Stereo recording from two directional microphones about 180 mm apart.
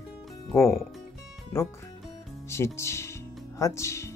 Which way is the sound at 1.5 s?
15° left (ahead or behind).